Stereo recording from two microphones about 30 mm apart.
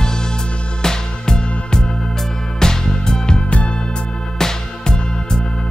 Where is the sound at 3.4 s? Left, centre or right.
Left.